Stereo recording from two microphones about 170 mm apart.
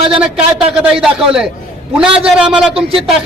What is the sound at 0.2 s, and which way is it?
A man's voice, 5° right (ahead or behind).